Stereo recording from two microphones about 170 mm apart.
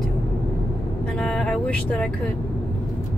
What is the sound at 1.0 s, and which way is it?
Vehicle, 5° left (ahead or behind).